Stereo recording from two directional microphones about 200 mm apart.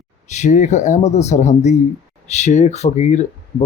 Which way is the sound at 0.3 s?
35° left (ahead or behind).